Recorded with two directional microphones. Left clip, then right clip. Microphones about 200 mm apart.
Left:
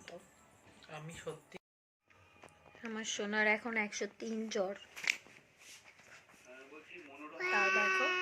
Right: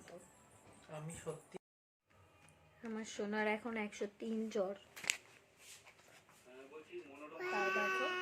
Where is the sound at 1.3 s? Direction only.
10° right (ahead or behind).